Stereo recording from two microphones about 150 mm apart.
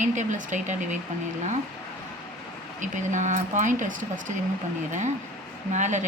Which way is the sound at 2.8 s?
55° right (ahead or behind).